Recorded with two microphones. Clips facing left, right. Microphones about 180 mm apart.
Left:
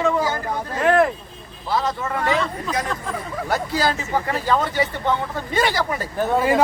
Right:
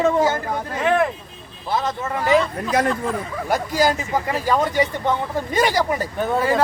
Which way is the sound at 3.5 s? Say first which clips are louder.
Right 3 dB; 15° right (ahead or behind).